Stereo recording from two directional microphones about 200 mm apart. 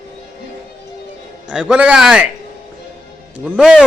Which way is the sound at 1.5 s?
5° right (ahead or behind).